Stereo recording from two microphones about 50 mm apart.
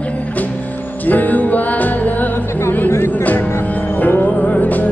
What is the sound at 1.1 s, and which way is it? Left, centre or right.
Music, left.